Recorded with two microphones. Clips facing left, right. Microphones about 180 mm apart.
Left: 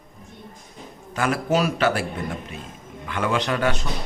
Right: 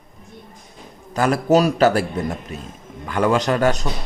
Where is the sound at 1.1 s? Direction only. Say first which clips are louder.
Right 6 dB; 40° right (ahead or behind).